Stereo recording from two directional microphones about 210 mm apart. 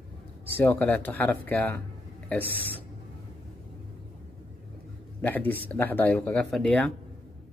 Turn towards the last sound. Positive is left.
turn(degrees=5)  # may be behind; listen again after turning